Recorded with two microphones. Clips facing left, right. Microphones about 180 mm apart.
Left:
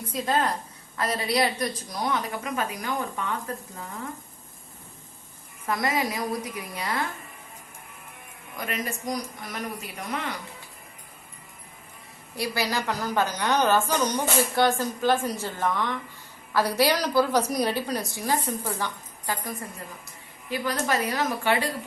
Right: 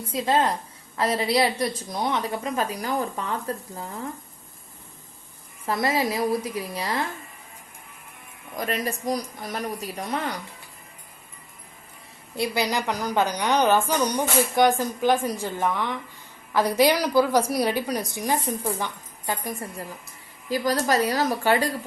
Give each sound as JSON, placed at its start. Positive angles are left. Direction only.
{"t": 0.1, "sound": "a woman's voice", "side_deg": -25}
{"t": 5.6, "sound": "a woman's voice", "side_deg": -30}
{"t": 8.5, "sound": "a man's voice", "side_deg": -35}
{"t": 12.4, "sound": "a woman's voice", "side_deg": -20}
{"t": 20.5, "sound": "a man's voice", "side_deg": -35}